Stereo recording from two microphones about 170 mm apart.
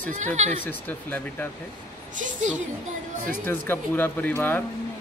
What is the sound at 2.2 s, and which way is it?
Speech, 45° right (ahead or behind).